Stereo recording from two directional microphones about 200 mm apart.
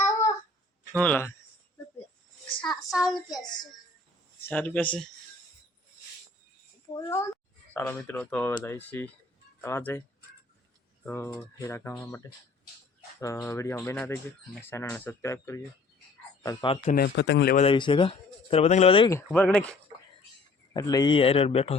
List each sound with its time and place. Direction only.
0.9 s speech: 5° left (ahead or behind)
2.9 s speech: centre (ahead or behind)
3.5 s speech: 20° left (ahead or behind)
4.4 s speech: 10° left (ahead or behind)
6.9 s speech: 15° left (ahead or behind)
11.0 s speech: 10° left (ahead or behind)
16.8 s speech: 45° left (ahead or behind)
17.6 s speech: 25° left (ahead or behind)
19.1 s speech: 10° left (ahead or behind)
20.7 s speech: 20° left (ahead or behind)